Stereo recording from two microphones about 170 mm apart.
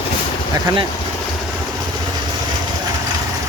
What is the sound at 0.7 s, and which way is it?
Speech, 25° right (ahead or behind).